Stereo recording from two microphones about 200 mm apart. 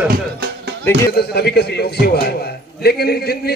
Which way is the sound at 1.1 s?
55° left (ahead or behind).